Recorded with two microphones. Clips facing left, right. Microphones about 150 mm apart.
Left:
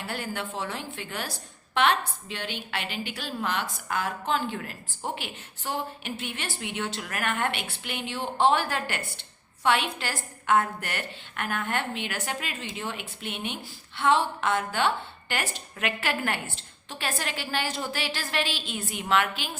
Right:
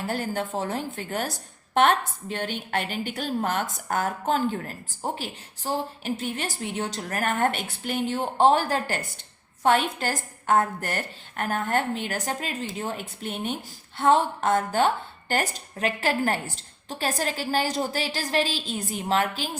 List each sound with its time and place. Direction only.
0.0 s a woman's voice: 45° right (ahead or behind)